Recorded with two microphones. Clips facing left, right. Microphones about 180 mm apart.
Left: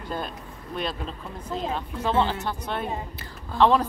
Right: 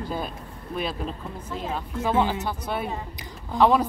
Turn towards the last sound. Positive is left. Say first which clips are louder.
# even
turn(degrees=-10)  # may be behind; listen again after turning